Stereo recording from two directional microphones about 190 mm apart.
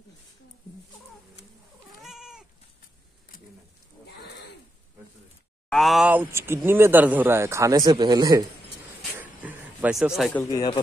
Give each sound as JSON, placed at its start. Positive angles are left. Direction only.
{"t": 2.0, "sound": "cat", "side_deg": -5}
{"t": 5.7, "sound": "speech", "side_deg": 0}
{"t": 9.2, "sound": "a sound", "side_deg": -10}
{"t": 10.3, "sound": "speech", "side_deg": 20}